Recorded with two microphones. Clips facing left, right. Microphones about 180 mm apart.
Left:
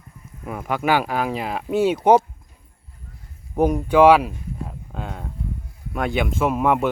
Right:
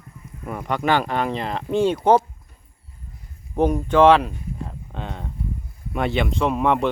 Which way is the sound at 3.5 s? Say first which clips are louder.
Left 1 dB; 10° left (ahead or behind).